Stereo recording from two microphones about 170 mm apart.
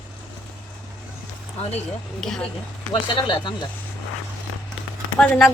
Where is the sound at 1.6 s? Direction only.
40° left (ahead or behind).